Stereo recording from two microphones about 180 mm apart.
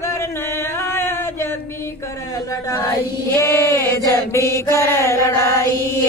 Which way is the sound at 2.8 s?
15° left (ahead or behind).